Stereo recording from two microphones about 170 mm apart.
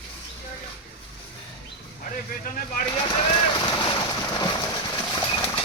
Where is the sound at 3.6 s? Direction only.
25° left (ahead or behind).